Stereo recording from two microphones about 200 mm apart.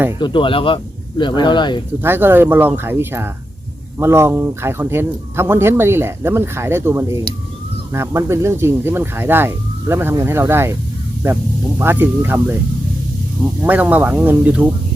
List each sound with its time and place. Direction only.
0.2 s speech: 25° left (ahead or behind)
2.0 s speech: 10° right (ahead or behind)
11.8 s speech: 10° right (ahead or behind)
13.6 s speech: 10° right (ahead or behind)